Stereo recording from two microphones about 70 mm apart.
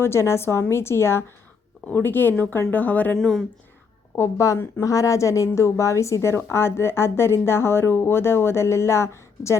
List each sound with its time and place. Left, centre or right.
0.0 s a woman's voice: left
3.2 s speech: centre
4.1 s a woman's voice: left